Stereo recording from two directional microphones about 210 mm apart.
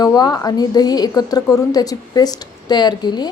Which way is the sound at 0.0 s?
20° left (ahead or behind).